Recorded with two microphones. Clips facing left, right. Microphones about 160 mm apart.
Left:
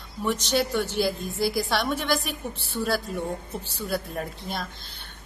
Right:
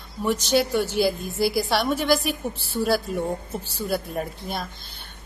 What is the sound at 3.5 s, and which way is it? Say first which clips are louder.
A woman's voice: right 3 dB; 5° right (ahead or behind).